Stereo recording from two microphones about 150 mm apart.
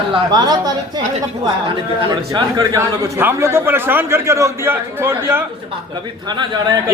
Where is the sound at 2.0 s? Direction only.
30° right (ahead or behind).